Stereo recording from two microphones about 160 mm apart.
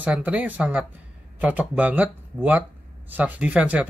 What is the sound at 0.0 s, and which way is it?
Speech, 10° right (ahead or behind).